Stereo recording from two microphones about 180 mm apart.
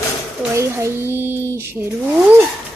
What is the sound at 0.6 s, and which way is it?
Speech, 15° right (ahead or behind).